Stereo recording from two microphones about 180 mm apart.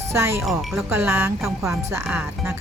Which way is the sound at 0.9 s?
10° right (ahead or behind).